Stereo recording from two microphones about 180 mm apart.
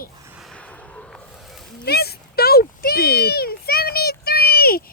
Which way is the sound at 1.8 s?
60° left (ahead or behind).